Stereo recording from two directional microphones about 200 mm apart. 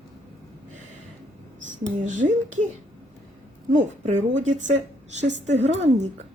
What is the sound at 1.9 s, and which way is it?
Speech, 40° right (ahead or behind).